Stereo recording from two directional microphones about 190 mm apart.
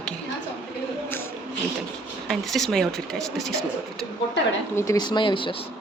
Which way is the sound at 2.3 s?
Centre (ahead or behind).